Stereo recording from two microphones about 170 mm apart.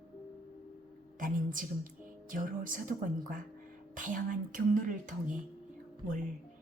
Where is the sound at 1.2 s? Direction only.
50° right (ahead or behind).